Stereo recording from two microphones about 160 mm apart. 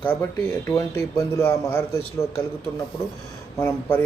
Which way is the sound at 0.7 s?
20° left (ahead or behind).